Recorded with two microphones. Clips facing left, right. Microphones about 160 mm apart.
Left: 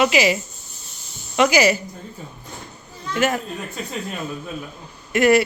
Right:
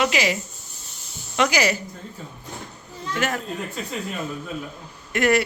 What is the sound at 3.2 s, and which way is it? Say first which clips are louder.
Speech: left 6 dB; 5° left (ahead or behind).